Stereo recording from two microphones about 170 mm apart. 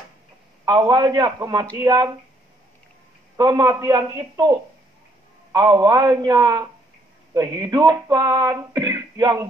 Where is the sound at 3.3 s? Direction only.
25° right (ahead or behind).